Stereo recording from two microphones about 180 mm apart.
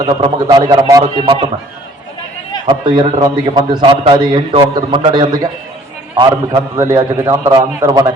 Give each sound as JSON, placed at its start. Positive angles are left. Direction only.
{"t": 0.0, "sound": "a man's voice", "side_deg": -30}
{"t": 2.6, "sound": "a man's voice", "side_deg": -25}
{"t": 6.7, "sound": "a man's voice", "side_deg": -20}